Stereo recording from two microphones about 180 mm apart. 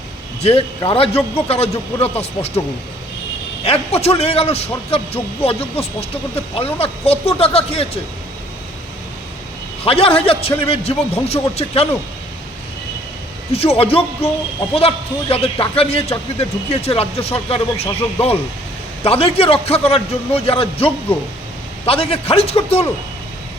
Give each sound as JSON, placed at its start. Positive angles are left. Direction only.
{"t": 0.4, "sound": "a man's voice", "side_deg": 30}
{"t": 3.6, "sound": "a man's voice", "side_deg": 35}
{"t": 9.8, "sound": "a man's voice", "side_deg": 30}
{"t": 13.5, "sound": "a man's voice", "side_deg": 35}